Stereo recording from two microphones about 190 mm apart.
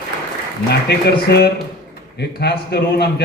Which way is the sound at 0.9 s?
60° left (ahead or behind).